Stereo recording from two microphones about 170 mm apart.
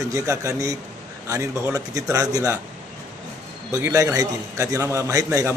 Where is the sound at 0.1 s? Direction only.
20° right (ahead or behind).